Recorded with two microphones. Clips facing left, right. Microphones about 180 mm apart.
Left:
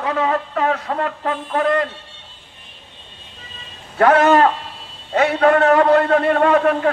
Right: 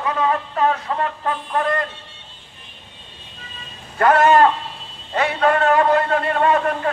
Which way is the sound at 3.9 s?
70° left (ahead or behind).